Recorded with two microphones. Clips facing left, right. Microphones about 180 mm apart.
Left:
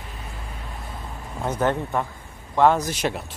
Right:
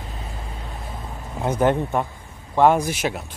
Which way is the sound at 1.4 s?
10° right (ahead or behind).